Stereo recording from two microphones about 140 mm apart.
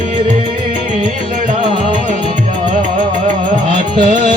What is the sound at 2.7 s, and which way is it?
Music, 65° right (ahead or behind).